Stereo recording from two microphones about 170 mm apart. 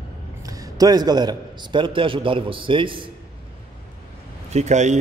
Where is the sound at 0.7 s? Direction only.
25° right (ahead or behind).